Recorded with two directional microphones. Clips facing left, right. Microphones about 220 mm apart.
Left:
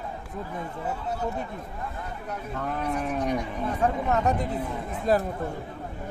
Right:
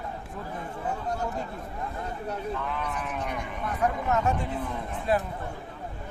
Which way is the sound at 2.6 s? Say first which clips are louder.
Left 4 dB; 45° left (ahead or behind).